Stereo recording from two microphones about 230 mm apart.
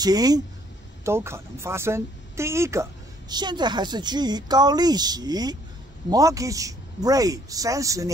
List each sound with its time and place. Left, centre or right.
0.0 s speech: centre